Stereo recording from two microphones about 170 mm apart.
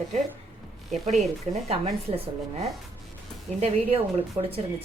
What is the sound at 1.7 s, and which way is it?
Speech, 35° right (ahead or behind).